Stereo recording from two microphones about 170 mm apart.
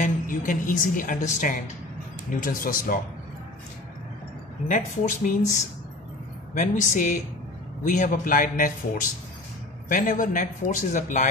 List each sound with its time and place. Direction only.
0.0 s a woman's voice: 50° left (ahead or behind)
4.6 s a man's voice: 50° left (ahead or behind)
6.5 s a man's voice: 45° left (ahead or behind)
9.8 s a man's voice: 50° left (ahead or behind)